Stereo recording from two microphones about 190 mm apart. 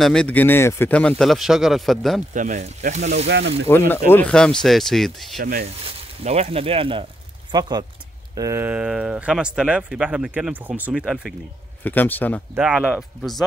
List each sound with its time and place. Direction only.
0.0 s speech: 5° left (ahead or behind)
2.3 s speech: 40° right (ahead or behind)
3.3 s speech: 65° right (ahead or behind)
3.6 s speech: 10° left (ahead or behind)
5.4 s speech: 50° right (ahead or behind)
5.9 s speech: 30° right (ahead or behind); by 11.3 s 5° right (ahead or behind)
11.8 s speech: 10° left (ahead or behind)
12.5 s speech: 5° right (ahead or behind)